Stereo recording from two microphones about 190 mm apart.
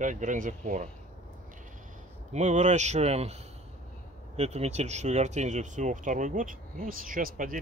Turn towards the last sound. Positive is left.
turn(degrees=-45)  # may be behind; listen again after turning